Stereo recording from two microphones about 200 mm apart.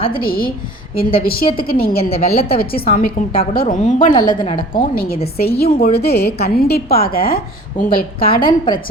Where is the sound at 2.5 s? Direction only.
50° left (ahead or behind).